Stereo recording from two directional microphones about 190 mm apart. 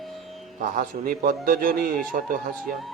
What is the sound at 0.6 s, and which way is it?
A man's voice, 45° right (ahead or behind).